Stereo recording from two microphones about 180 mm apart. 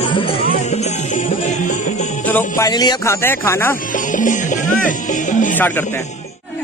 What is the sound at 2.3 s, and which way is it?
Speech, 20° left (ahead or behind).